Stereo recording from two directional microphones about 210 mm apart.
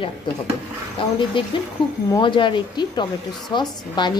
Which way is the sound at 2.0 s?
20° left (ahead or behind).